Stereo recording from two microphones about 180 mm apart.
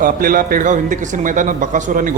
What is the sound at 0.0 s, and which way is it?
A man's voice, 50° right (ahead or behind).